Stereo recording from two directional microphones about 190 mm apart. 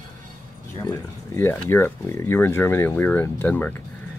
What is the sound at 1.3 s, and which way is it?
Speech, 10° left (ahead or behind).